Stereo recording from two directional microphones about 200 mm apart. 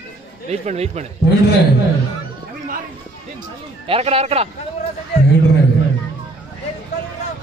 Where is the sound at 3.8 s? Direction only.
30° right (ahead or behind).